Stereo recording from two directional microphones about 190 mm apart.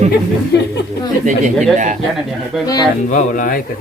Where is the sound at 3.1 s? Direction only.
45° left (ahead or behind).